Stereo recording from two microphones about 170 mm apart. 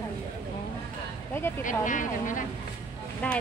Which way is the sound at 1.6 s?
50° left (ahead or behind).